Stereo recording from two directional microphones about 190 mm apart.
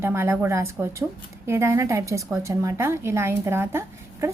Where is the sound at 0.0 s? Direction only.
15° right (ahead or behind).